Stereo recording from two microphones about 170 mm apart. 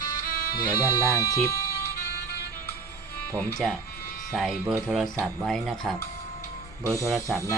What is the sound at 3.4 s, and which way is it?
Speech, centre (ahead or behind).